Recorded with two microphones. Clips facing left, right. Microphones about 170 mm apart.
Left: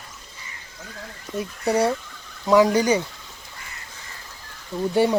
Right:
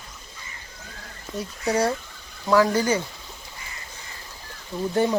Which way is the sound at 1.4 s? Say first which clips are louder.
Left 2 dB; 10° left (ahead or behind).